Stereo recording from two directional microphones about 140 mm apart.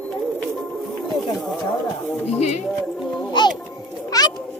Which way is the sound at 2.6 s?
5° left (ahead or behind).